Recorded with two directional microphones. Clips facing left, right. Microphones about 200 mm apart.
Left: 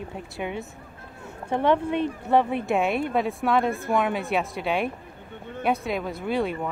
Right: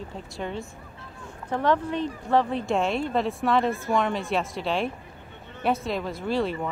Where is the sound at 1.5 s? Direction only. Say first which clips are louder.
Left 2 dB; 25° left (ahead or behind).